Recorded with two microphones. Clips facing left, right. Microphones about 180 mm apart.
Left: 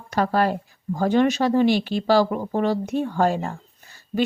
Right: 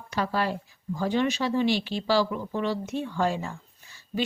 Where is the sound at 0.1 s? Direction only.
50° left (ahead or behind).